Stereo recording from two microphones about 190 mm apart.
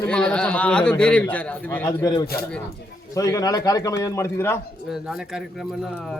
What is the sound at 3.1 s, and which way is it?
A man's voice, 15° left (ahead or behind).